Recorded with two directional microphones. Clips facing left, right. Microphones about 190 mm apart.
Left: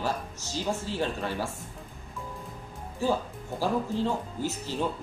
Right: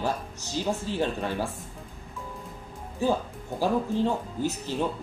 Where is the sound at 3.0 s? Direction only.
15° right (ahead or behind).